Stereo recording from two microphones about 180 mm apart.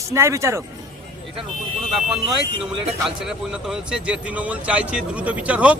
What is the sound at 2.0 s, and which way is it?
Speech, centre (ahead or behind).